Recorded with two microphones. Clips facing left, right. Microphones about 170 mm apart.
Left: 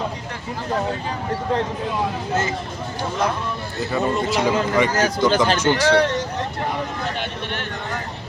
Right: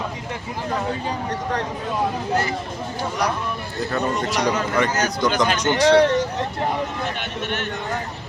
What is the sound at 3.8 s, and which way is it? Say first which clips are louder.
A man's voice: left 2 dB; 5° left (ahead or behind).